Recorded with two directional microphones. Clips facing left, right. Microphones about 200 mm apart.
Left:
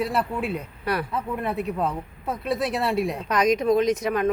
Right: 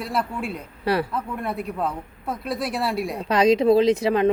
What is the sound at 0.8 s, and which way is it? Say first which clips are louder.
Speech: right 5 dB; 30° right (ahead or behind).